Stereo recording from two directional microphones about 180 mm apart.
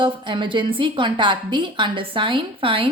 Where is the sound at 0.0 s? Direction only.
25° right (ahead or behind).